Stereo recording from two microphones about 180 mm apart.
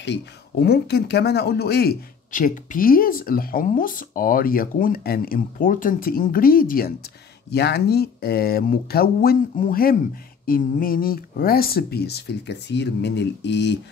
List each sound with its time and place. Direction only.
0.0 s speech: 70° left (ahead or behind); by 6.9 s 55° left (ahead or behind)
7.5 s speech: 65° left (ahead or behind)